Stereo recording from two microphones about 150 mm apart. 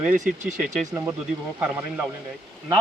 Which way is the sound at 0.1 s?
65° right (ahead or behind).